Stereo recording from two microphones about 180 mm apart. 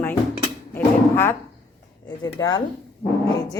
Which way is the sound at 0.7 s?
10° left (ahead or behind).